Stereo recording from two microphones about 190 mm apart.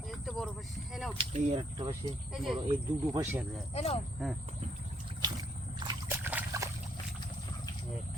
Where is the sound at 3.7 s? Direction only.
30° left (ahead or behind).